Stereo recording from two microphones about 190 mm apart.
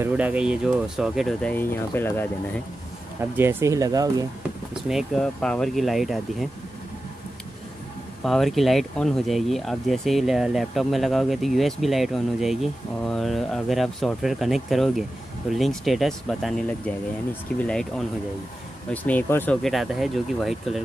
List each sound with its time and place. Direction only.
0.0 s speech: 5° right (ahead or behind); by 2.2 s 10° left (ahead or behind)
3.2 s speech: 10° right (ahead or behind)
4.8 s speech: centre (ahead or behind)
8.2 s speech: centre (ahead or behind)